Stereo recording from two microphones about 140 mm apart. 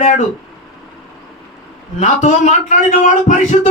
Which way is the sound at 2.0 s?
50° left (ahead or behind).